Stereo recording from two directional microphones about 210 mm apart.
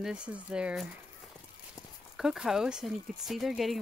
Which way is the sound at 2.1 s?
Centre (ahead or behind).